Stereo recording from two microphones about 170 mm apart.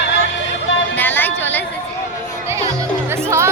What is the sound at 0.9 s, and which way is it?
Speech, 10° left (ahead or behind).